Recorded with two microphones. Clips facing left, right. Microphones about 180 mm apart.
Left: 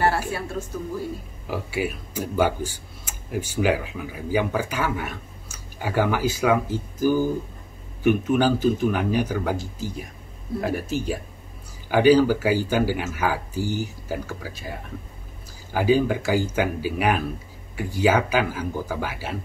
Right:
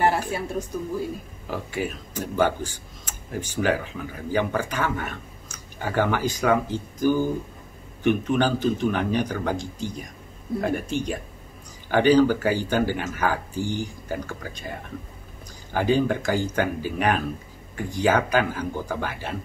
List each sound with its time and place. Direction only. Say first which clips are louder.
0.3 s speech: right 1 dB; 15° right (ahead or behind)
1.5 s speech: left 2 dB; 10° left (ahead or behind)